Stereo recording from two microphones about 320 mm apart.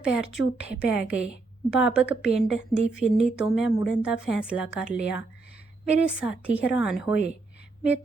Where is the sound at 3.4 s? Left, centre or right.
Centre.